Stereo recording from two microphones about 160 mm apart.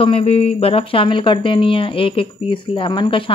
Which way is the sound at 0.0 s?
35° left (ahead or behind).